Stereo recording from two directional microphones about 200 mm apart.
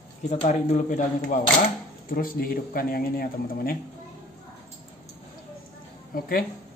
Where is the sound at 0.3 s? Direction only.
30° left (ahead or behind).